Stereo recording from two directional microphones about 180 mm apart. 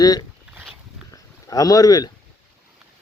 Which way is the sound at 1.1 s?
20° left (ahead or behind).